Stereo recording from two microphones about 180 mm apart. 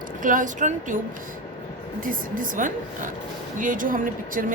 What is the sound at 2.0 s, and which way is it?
A woman's voice, 50° right (ahead or behind).